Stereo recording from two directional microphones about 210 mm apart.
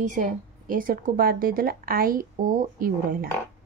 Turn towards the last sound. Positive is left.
turn(degrees=-40)  # may be behind; listen again after turning